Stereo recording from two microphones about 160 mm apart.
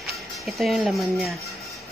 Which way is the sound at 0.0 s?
Centre (ahead or behind).